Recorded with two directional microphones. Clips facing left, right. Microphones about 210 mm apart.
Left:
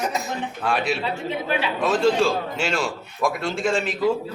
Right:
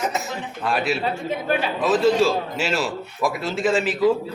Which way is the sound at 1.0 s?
45° right (ahead or behind).